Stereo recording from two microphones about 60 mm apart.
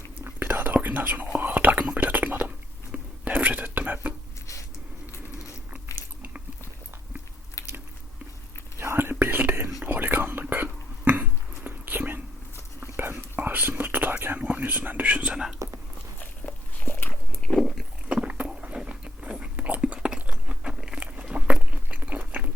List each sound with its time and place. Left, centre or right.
0.3 s speech: right
1.4 s whispering: right
2.0 s chewing: right
2.9 s whispering: right
8.8 s whispering: right
15.0 s whispering: right
15.6 s a sound: right
16.2 s dog: left
17.5 s biting: centre
18.1 s biting: right
21.2 s chewing: centre